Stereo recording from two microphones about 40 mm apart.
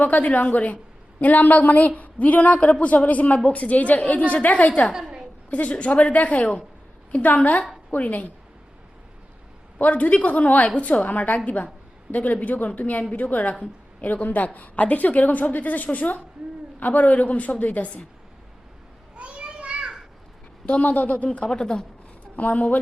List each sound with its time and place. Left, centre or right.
0.0 s a woman's voice: left
9.7 s a woman's voice: left
19.1 s children playing: right
20.7 s a woman's voice: left
21.3 s speech: left
22.4 s a woman's voice: left